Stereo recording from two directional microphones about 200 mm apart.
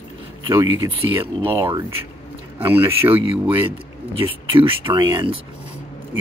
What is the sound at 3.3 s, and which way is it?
Speech, 25° right (ahead or behind).